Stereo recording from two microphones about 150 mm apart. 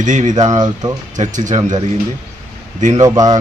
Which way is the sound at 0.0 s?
55° right (ahead or behind).